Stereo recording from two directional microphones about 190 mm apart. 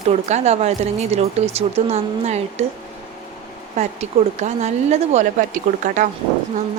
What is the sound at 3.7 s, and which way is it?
A woman's voice, 35° right (ahead or behind).